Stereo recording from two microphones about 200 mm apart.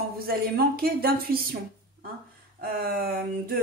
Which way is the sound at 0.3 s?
50° right (ahead or behind).